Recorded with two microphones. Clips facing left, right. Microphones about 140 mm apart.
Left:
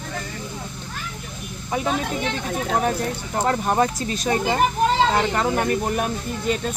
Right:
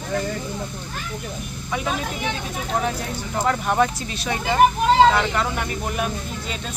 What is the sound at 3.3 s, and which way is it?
Speech, 35° left (ahead or behind).